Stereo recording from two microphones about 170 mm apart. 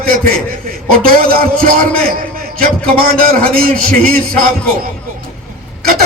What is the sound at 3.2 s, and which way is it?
Speech, 60° right (ahead or behind).